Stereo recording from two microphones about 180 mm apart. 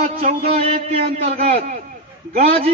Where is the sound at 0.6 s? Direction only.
35° right (ahead or behind).